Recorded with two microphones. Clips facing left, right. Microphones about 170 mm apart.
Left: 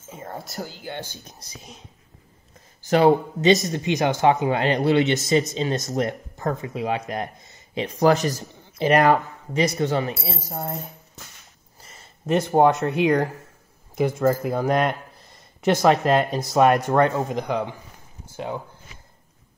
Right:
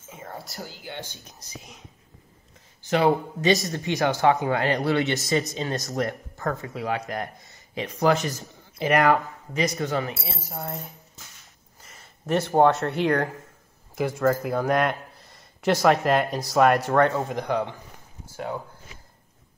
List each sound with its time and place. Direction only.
0.1 s speech: 40° left (ahead or behind)
2.8 s a man's voice: 35° left (ahead or behind)
3.3 s speech: 25° left (ahead or behind)
8.0 s a man's voice: 40° left (ahead or behind)
12.3 s speech: 15° left (ahead or behind)